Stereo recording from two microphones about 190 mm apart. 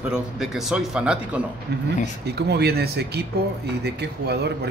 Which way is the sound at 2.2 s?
60° right (ahead or behind).